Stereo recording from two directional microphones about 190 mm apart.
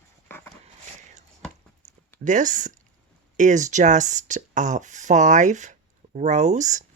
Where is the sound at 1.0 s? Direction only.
40° right (ahead or behind).